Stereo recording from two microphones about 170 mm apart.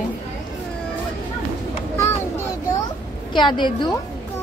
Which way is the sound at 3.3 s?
25° left (ahead or behind).